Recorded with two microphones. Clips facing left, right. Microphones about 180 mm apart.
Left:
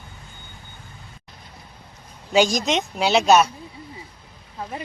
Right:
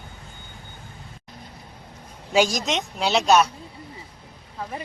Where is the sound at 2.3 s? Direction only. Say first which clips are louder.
Left 2 dB; 5° right (ahead or behind).